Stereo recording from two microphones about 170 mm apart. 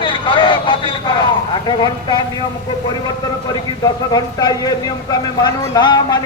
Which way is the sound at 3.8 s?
25° left (ahead or behind).